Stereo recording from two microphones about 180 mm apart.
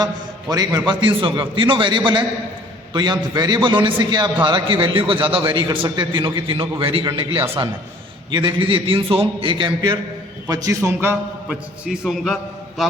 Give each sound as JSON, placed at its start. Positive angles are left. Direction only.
{"t": 0.5, "sound": "a man's voice", "side_deg": -20}